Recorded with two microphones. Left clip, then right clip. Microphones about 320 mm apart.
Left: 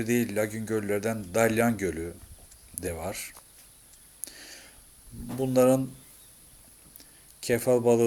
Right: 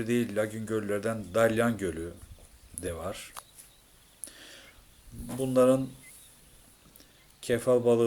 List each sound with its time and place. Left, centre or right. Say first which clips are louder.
0.0 s speech: left 2 dB; centre
4.3 s a sound: left 2 dB; centre
5.4 s speech: left 1 dB; centre
7.4 s speech: left 1 dB; centre